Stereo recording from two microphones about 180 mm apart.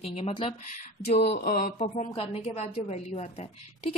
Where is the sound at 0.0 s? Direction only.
35° left (ahead or behind).